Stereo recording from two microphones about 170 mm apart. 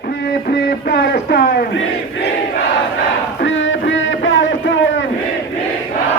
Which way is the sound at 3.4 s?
90° left.